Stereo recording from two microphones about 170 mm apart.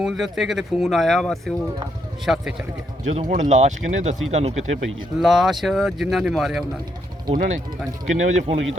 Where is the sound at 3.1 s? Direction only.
45° right (ahead or behind).